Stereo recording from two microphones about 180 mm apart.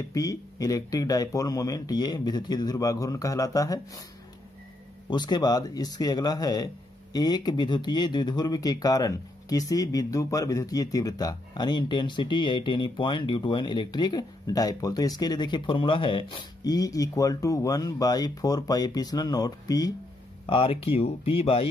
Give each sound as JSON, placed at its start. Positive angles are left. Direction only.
{"t": 0.1, "sound": "speech", "side_deg": 20}
{"t": 5.1, "sound": "speech", "side_deg": 25}